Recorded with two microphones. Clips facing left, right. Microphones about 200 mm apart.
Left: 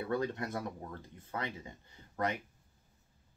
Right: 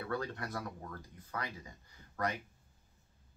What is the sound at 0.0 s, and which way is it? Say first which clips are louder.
Speech: left 4 dB; 20° left (ahead or behind).